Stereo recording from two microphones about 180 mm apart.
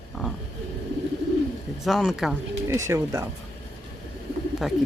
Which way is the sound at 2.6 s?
15° right (ahead or behind).